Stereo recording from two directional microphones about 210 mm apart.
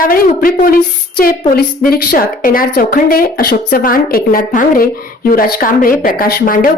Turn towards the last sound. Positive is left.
turn(degrees=40)  # may be behind; listen again after turning